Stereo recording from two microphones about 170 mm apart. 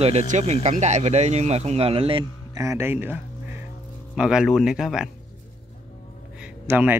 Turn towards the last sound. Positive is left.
turn(degrees=-10)  # may be behind; listen again after turning